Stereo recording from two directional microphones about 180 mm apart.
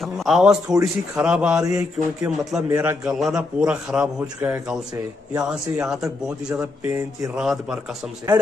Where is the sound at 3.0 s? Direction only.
5° right (ahead or behind).